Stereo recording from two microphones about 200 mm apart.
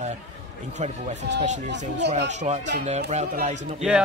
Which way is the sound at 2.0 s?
60° right (ahead or behind).